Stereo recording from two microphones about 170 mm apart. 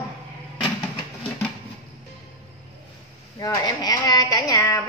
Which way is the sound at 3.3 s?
20° left (ahead or behind).